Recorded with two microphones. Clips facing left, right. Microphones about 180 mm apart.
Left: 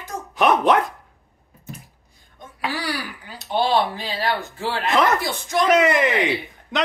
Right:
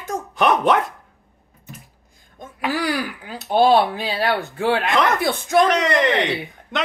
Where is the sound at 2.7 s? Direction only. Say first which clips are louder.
Right 8 dB; 50° right (ahead or behind).